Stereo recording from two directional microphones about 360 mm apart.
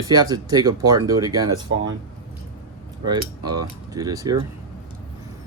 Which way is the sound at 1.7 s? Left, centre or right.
Right.